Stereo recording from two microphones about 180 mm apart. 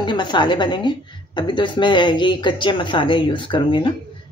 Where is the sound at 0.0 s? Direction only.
25° left (ahead or behind).